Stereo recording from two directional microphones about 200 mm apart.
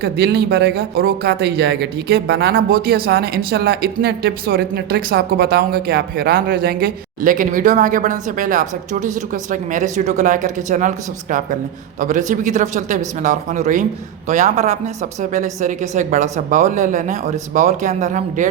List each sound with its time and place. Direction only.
0.0 s a woman's voice: 55° right (ahead or behind); by 18.4 s 35° right (ahead or behind)